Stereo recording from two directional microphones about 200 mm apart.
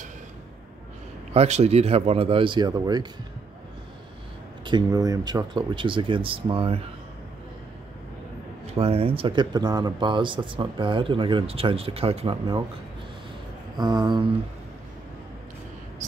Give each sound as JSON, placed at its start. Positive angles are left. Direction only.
{"t": 1.3, "sound": "speech", "side_deg": -30}
{"t": 4.6, "sound": "speech", "side_deg": -20}
{"t": 8.7, "sound": "speech", "side_deg": -30}
{"t": 13.7, "sound": "speech", "side_deg": -20}
{"t": 16.0, "sound": "speech", "side_deg": -40}